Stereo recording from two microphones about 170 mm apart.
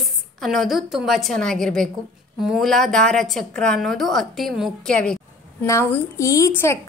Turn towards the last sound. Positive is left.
turn(degrees=15)  # may be behind; listen again after turning